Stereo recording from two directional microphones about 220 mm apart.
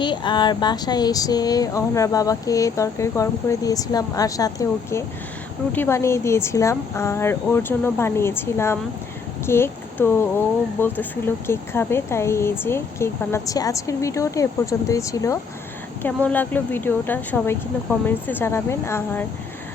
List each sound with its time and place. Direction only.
0.0 s speech: 20° left (ahead or behind)